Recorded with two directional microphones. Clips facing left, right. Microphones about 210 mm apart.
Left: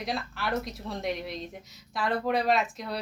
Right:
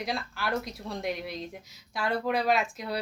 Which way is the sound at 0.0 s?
Centre (ahead or behind).